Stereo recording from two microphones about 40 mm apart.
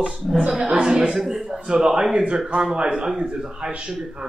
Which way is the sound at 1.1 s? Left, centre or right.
Centre.